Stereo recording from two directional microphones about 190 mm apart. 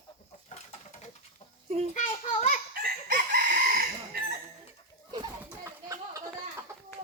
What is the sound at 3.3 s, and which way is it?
Chicken, 50° right (ahead or behind).